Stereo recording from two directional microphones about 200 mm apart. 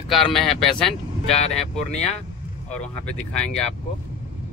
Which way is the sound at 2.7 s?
5° left (ahead or behind).